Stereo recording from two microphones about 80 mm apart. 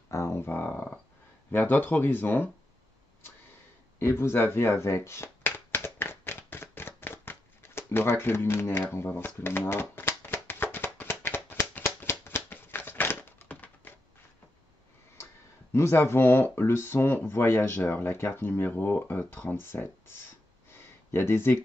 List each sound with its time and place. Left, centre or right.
0.1 s speech: left
4.0 s speech: left
5.9 s a sound: left
9.4 s shuffling cards: left
12.1 s typewriter: left
15.7 s speech: left
20.7 s a sound: left